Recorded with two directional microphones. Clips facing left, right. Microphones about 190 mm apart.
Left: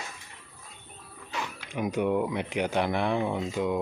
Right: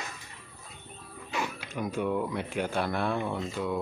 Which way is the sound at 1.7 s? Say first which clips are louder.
Left 5 dB; 15° left (ahead or behind).